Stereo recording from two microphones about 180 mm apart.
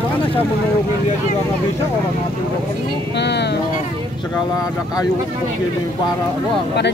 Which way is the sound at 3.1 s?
70° left (ahead or behind).